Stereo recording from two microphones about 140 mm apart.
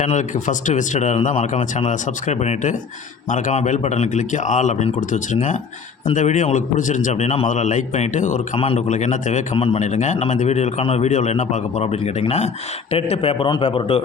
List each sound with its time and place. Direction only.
0.0 s a man's voice: 60° left (ahead or behind)
8.5 s a man's voice: 45° left (ahead or behind)
8.9 s a man's voice: 60° left (ahead or behind)
9.6 s a man's voice: 45° left (ahead or behind)